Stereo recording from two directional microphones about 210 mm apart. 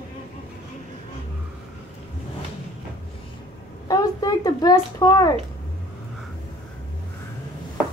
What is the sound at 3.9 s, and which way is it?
A child's voice, 20° left (ahead or behind).